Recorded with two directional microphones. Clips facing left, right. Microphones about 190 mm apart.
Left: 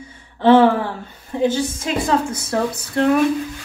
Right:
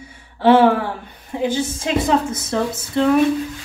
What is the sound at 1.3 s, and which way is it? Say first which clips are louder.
A woman's voice: left 2 dB; 15° right (ahead or behind).